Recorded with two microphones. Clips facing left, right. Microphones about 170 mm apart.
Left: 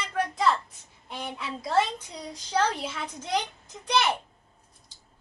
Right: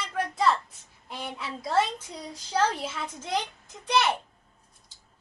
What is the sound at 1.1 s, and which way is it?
A woman's voice, centre (ahead or behind).